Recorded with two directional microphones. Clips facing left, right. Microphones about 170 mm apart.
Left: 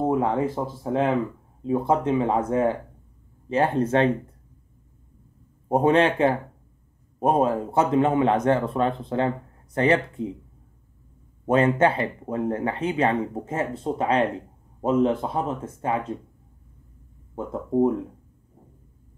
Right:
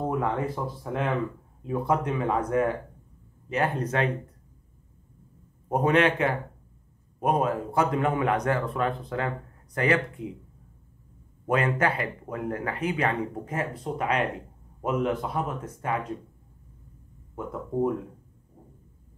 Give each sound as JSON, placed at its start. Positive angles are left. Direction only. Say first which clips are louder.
{"t": 0.0, "sound": "speech", "louder": "left 5 dB", "side_deg": 25}
{"t": 5.7, "sound": "a man's voice", "louder": "left 3 dB", "side_deg": 30}
{"t": 11.4, "sound": "speech", "louder": "left 6 dB", "side_deg": 25}
{"t": 17.4, "sound": "speech", "louder": "left 6 dB", "side_deg": 25}